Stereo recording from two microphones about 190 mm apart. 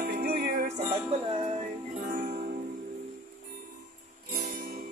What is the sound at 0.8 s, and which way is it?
Music, 30° right (ahead or behind).